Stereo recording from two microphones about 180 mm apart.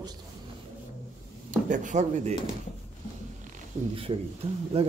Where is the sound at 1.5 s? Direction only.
45° right (ahead or behind).